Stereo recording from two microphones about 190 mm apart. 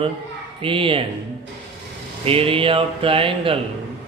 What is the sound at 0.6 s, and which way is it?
Speech, 30° right (ahead or behind).